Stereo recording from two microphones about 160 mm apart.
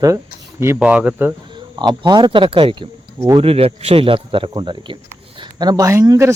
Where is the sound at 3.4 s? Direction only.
35° right (ahead or behind); by 6.3 s 20° right (ahead or behind).